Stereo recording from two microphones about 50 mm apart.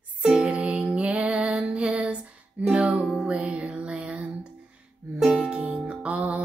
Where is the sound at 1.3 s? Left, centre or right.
Centre.